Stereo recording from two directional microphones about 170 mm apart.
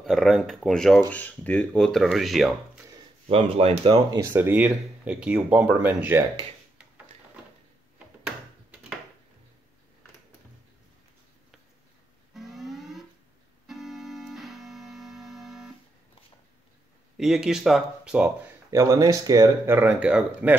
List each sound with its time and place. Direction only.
0.0 s speech: centre (ahead or behind)
3.3 s speech: 35° right (ahead or behind)
4.3 s speech: 10° right (ahead or behind)
12.4 s music: centre (ahead or behind)
13.7 s keyboard: centre (ahead or behind)
17.2 s speech: 5° right (ahead or behind)
18.7 s speech: 20° right (ahead or behind)